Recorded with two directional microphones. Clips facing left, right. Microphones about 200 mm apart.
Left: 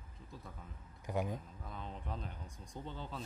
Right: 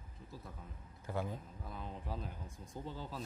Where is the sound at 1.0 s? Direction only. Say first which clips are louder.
Left 2 dB; 15° left (ahead or behind).